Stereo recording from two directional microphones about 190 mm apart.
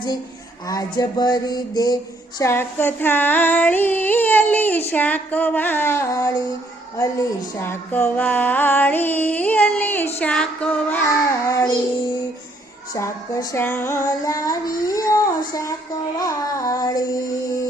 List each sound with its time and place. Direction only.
0.7 s a sound: 20° left (ahead or behind)
2.4 s music: 10° left (ahead or behind)
12.9 s music: 15° left (ahead or behind)